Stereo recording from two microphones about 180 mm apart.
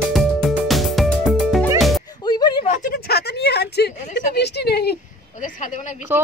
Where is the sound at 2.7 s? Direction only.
50° left (ahead or behind).